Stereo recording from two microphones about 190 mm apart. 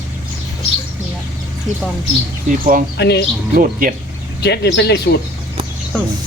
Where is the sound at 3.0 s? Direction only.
60° left (ahead or behind).